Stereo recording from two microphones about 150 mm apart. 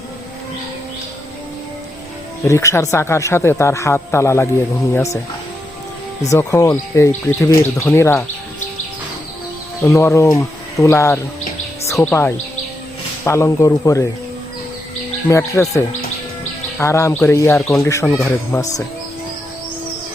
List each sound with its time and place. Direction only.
2.5 s speech: 20° left (ahead or behind)
6.3 s speech: 20° left (ahead or behind)
9.8 s speech: 20° left (ahead or behind)
15.3 s speech: 20° left (ahead or behind)